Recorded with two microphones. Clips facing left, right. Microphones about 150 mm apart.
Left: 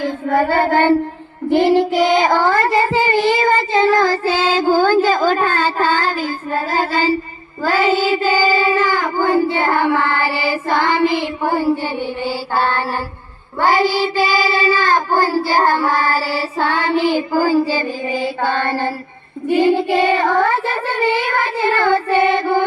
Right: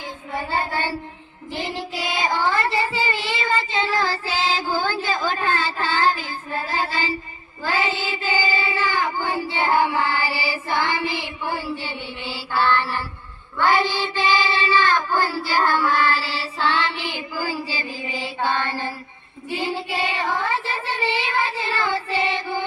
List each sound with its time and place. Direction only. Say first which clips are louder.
0.0 s child singing: left 13 dB; 65° left (ahead or behind)